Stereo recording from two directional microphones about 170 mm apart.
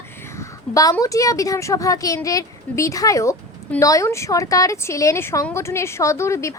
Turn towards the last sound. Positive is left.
turn(degrees=15)  # may be behind; listen again after turning